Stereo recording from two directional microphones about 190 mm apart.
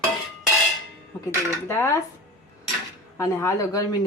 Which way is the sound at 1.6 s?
15° left (ahead or behind).